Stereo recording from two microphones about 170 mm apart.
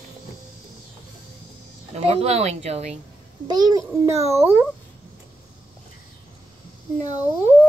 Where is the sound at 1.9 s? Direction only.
40° right (ahead or behind).